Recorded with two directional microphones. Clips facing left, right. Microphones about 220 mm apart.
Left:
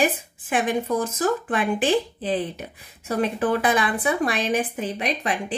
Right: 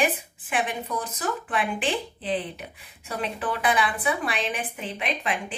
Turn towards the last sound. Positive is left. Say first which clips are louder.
# left 4 dB
turn(degrees=40)  # may be behind; listen again after turning